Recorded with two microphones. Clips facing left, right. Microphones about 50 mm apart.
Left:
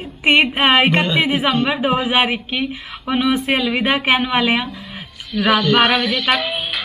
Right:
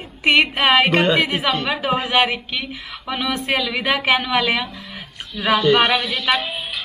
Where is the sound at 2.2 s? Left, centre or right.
Centre.